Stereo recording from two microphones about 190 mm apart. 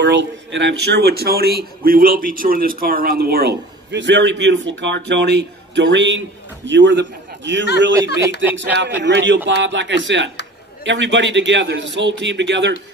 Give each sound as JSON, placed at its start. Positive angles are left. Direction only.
{"t": 0.0, "sound": "speech", "side_deg": -70}
{"t": 7.9, "sound": "speech", "side_deg": -15}
{"t": 9.0, "sound": "a man's voice", "side_deg": -70}